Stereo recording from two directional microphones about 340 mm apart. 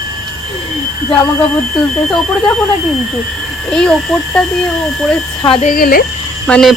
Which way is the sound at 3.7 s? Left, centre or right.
Centre.